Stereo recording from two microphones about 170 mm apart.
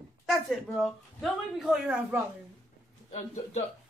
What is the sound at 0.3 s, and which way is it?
A woman's voice, centre (ahead or behind).